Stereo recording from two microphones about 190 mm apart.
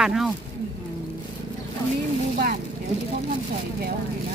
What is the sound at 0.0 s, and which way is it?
Speech, centre (ahead or behind).